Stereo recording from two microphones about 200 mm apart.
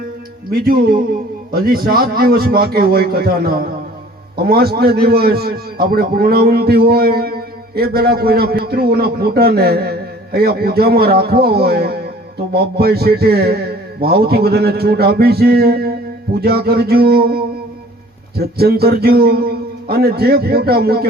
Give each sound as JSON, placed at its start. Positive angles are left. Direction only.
{"t": 0.5, "sound": "a man's voice", "side_deg": -50}